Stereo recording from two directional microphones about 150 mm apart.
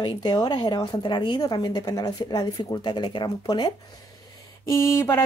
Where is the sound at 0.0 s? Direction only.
30° left (ahead or behind).